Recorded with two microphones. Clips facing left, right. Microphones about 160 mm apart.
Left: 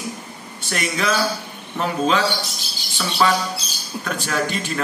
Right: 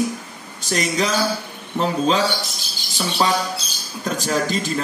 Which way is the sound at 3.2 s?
30° right (ahead or behind).